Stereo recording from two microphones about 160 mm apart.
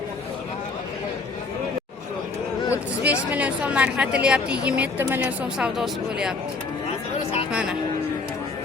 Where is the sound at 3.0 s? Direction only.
10° right (ahead or behind).